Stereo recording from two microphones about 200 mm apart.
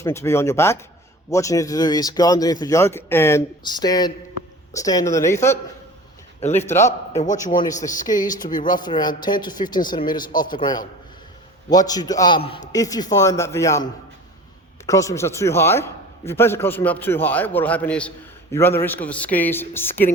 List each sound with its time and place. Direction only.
0.0 s a man's voice: 15° left (ahead or behind)
14.8 s a man's voice: 15° left (ahead or behind)